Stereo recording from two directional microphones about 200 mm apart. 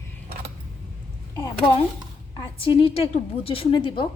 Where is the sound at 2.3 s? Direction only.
25° left (ahead or behind).